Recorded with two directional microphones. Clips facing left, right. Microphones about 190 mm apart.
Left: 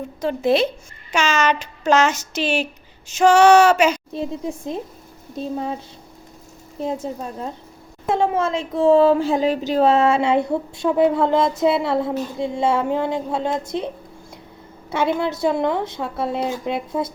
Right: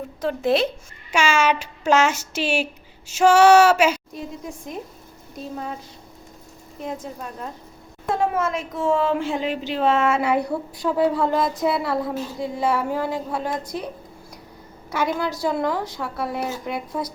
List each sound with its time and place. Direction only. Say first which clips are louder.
0.2 s speech: left 2 dB; centre (ahead or behind)
4.1 s speech: left 7 dB; 25° left (ahead or behind)
6.7 s speech: left 6 dB; 30° left (ahead or behind)